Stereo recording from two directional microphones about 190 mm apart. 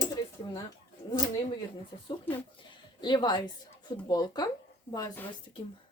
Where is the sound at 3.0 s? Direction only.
25° left (ahead or behind).